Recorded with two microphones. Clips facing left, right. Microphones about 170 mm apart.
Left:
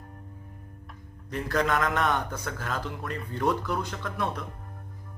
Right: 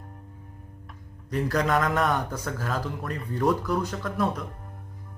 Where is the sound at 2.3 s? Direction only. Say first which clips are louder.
Right 3 dB; 35° right (ahead or behind).